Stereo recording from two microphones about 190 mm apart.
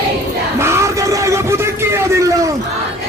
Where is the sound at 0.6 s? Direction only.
15° right (ahead or behind).